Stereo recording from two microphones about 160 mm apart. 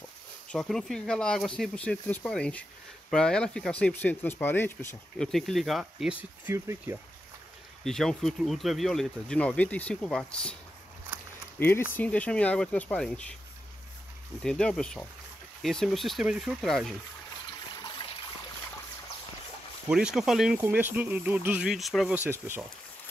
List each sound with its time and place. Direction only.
0.5 s speech: centre (ahead or behind)
5.2 s speech: centre (ahead or behind)
6.5 s speech: 15° right (ahead or behind)
7.8 s speech: 5° left (ahead or behind)
11.6 s speech: 15° left (ahead or behind)
14.4 s speech: 5° left (ahead or behind)
17.7 s water: 30° left (ahead or behind)
19.9 s speech: 5° right (ahead or behind)
22.1 s speech: 15° right (ahead or behind)